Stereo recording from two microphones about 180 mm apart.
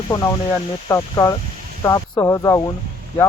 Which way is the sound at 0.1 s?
20° left (ahead or behind).